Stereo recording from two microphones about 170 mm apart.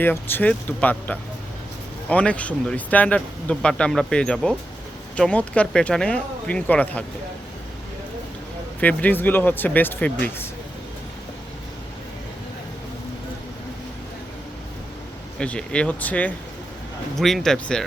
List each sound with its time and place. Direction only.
0.0 s speech: 10° left (ahead or behind)
8.8 s speech: 10° left (ahead or behind)
15.4 s speech: 5° left (ahead or behind)